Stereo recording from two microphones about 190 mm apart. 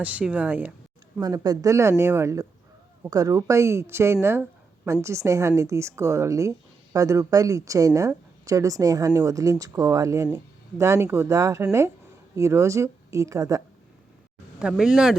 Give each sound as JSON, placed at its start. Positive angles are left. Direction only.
{"t": 0.0, "sound": "speech", "side_deg": -5}
{"t": 14.6, "sound": "speech", "side_deg": -5}